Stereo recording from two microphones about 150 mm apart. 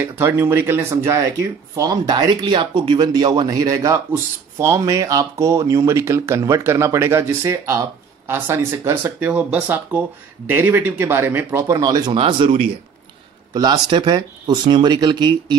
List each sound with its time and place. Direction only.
0.0 s speech: 15° right (ahead or behind); by 15.5 s 30° right (ahead or behind)